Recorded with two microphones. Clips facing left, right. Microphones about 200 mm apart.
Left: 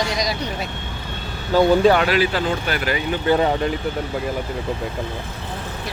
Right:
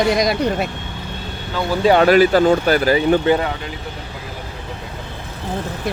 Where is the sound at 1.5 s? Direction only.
40° left (ahead or behind).